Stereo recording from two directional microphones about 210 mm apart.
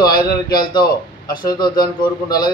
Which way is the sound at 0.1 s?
20° left (ahead or behind).